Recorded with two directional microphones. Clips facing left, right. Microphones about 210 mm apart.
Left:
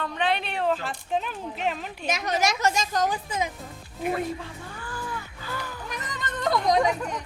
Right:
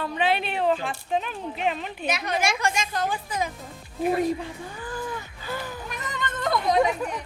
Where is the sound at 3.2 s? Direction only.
25° left (ahead or behind).